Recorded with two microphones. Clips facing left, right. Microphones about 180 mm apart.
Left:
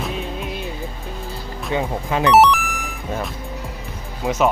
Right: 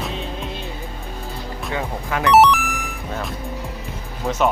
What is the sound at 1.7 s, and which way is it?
Speech, 20° left (ahead or behind).